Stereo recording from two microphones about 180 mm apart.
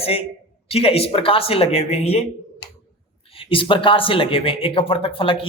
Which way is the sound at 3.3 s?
30° left (ahead or behind).